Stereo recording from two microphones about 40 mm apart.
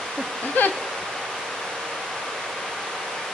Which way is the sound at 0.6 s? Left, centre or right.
Left.